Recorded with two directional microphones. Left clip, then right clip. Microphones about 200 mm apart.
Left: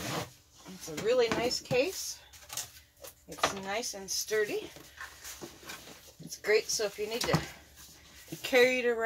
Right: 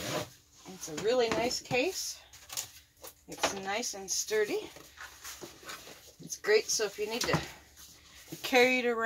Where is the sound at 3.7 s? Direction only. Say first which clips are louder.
Right 1 dB; 35° right (ahead or behind).